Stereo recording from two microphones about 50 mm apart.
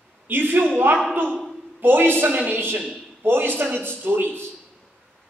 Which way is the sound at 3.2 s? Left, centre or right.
Right.